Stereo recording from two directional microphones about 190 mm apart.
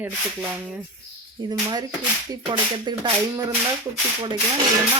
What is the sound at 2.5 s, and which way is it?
Speech, 25° right (ahead or behind).